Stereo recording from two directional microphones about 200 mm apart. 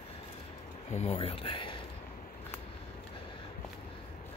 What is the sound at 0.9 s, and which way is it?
Speech, 30° left (ahead or behind).